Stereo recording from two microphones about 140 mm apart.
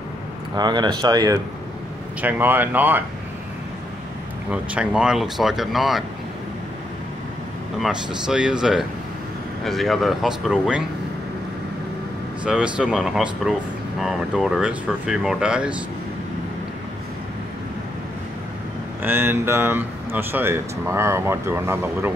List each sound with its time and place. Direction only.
0.6 s speech: 30° right (ahead or behind)
2.2 s speech: 15° right (ahead or behind)
4.5 s speech: 5° right (ahead or behind)
7.8 s speech: 5° right (ahead or behind)
12.4 s speech: 5° right (ahead or behind)
19.0 s speech: 15° right (ahead or behind)